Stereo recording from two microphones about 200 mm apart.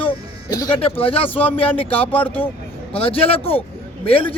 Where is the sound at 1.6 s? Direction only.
25° left (ahead or behind).